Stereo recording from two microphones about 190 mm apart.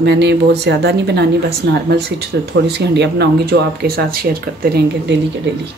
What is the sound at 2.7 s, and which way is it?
Speech, 60° right (ahead or behind).